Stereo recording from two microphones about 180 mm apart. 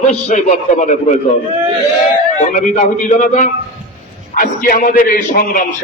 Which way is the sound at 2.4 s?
40° left (ahead or behind).